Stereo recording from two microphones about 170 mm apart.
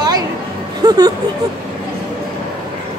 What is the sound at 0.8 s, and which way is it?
Speech, 20° right (ahead or behind).